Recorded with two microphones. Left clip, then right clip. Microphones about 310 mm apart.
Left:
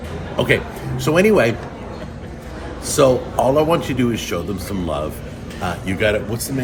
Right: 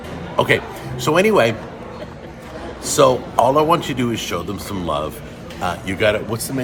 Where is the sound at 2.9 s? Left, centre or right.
Centre.